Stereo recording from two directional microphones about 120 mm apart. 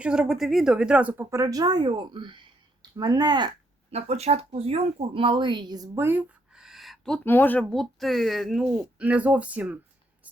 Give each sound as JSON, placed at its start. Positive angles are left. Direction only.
{"t": 0.0, "sound": "speech", "side_deg": -5}
{"t": 1.2, "sound": "speech", "side_deg": -25}
{"t": 3.9, "sound": "speech", "side_deg": -60}
{"t": 6.0, "sound": "speech", "side_deg": -20}
{"t": 6.5, "sound": "a sound", "side_deg": -5}
{"t": 7.3, "sound": "speech", "side_deg": 15}